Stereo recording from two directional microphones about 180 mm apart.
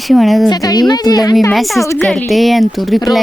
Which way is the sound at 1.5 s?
Centre (ahead or behind).